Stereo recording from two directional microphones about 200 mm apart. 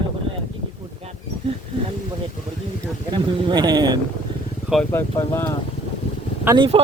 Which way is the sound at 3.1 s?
20° right (ahead or behind).